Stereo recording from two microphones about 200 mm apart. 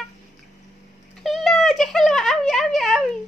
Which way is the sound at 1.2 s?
Centre (ahead or behind).